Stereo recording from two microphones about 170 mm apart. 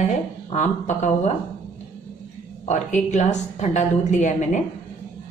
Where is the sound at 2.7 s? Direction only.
45° left (ahead or behind).